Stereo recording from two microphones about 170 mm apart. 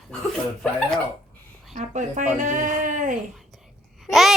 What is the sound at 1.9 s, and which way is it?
Speech, 45° right (ahead or behind).